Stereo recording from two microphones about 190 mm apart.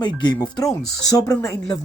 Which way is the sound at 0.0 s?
25° left (ahead or behind).